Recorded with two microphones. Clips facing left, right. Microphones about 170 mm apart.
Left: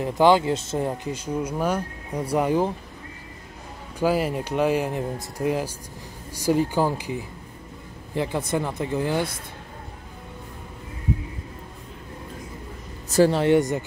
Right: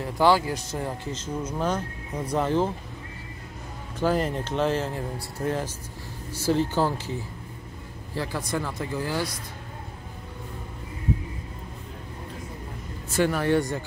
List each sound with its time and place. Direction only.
0.0 s speech: 20° left (ahead or behind)
4.0 s speech: 10° left (ahead or behind)
13.1 s speech: 30° left (ahead or behind)